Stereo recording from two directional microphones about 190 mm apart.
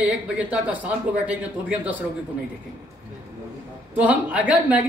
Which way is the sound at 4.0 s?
5° right (ahead or behind).